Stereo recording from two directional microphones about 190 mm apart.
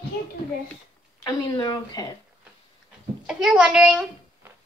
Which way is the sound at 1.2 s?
20° left (ahead or behind).